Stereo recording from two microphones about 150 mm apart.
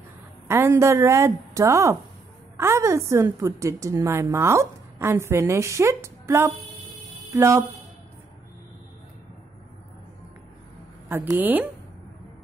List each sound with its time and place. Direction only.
0.5 s a woman's voice: 20° right (ahead or behind)
11.1 s a woman's voice: 15° right (ahead or behind)